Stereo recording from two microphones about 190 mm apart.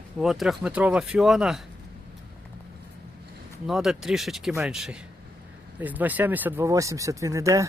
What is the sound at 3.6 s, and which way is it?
Speech, centre (ahead or behind).